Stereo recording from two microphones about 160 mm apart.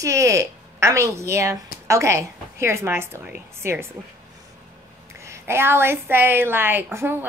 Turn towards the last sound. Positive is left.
turn(degrees=-15)  # may be behind; listen again after turning